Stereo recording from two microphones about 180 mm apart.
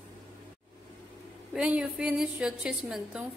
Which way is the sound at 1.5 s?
Centre (ahead or behind).